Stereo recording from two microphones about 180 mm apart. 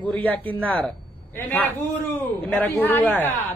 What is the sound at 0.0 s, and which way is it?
A man's voice, 10° left (ahead or behind).